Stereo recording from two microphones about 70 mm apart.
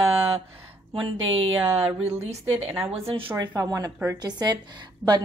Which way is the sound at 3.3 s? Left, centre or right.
Right.